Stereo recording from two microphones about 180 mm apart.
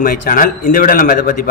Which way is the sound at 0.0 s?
50° left (ahead or behind).